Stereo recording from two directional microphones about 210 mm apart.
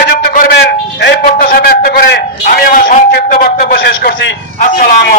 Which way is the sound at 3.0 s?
50° left (ahead or behind).